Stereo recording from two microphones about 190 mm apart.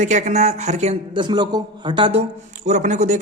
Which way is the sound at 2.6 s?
40° right (ahead or behind).